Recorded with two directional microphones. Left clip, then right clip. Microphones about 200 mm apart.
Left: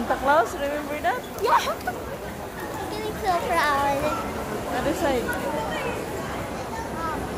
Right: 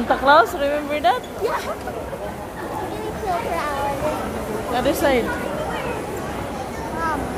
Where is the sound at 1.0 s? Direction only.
35° right (ahead or behind).